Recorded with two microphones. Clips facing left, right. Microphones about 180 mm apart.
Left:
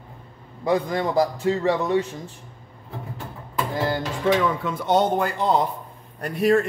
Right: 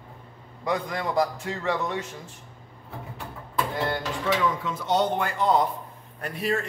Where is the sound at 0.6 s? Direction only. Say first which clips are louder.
Left 6 dB; 35° left (ahead or behind).